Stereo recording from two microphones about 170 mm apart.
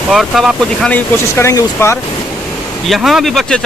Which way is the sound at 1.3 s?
20° left (ahead or behind).